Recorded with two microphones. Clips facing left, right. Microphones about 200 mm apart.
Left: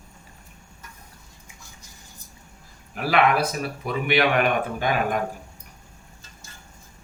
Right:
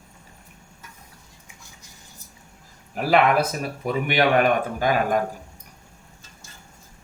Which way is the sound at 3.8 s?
45° right (ahead or behind).